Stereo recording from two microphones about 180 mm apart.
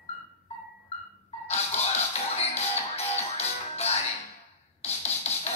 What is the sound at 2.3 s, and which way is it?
Music, 35° left (ahead or behind).